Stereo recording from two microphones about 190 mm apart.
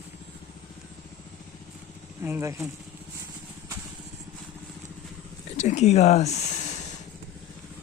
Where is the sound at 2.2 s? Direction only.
15° right (ahead or behind).